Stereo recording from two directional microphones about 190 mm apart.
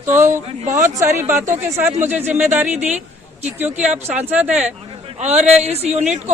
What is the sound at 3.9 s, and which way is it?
Speech, 10° right (ahead or behind).